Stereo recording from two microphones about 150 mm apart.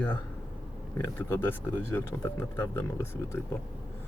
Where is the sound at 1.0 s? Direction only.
15° left (ahead or behind).